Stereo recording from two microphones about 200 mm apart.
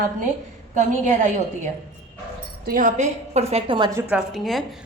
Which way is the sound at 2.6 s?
45° right (ahead or behind).